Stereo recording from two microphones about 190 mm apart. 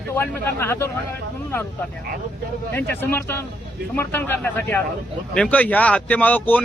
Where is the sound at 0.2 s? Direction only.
10° left (ahead or behind).